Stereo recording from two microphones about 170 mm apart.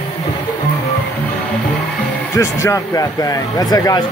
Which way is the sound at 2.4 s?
20° left (ahead or behind).